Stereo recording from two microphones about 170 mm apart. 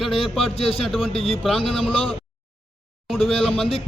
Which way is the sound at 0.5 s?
35° left (ahead or behind).